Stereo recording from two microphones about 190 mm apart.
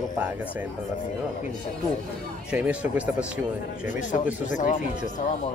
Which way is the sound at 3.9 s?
40° left (ahead or behind).